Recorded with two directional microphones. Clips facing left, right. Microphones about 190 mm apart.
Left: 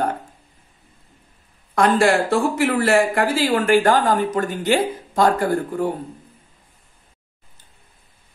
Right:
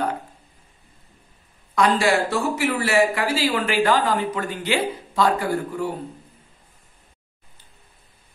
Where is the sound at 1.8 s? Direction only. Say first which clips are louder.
Left 3 dB; 50° left (ahead or behind).